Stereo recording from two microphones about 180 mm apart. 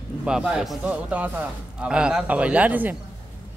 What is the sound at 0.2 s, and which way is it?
A man's voice, 5° right (ahead or behind).